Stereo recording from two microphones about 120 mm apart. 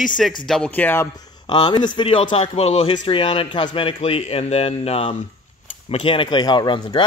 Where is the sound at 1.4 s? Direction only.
40° left (ahead or behind); by 2.9 s 60° left (ahead or behind).